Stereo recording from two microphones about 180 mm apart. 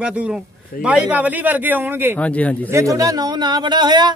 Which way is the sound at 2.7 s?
15° right (ahead or behind).